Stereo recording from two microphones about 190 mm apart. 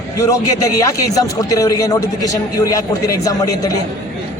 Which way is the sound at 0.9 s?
15° left (ahead or behind).